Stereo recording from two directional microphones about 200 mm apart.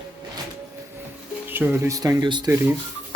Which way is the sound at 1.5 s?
10° right (ahead or behind).